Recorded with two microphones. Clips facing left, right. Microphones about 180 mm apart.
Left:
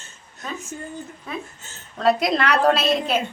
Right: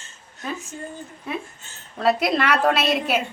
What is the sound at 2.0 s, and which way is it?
A woman's voice, 5° right (ahead or behind).